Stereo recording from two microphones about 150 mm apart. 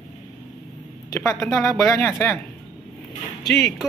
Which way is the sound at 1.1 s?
15° left (ahead or behind).